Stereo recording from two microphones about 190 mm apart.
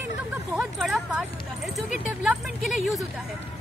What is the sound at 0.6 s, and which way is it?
Speech, centre (ahead or behind).